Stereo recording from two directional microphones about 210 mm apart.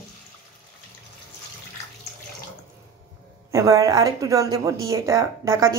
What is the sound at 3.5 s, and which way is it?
Speech, 15° right (ahead or behind).